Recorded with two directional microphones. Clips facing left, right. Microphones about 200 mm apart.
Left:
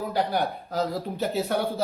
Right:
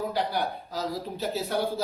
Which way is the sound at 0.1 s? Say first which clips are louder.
Left 3 dB; 55° left (ahead or behind).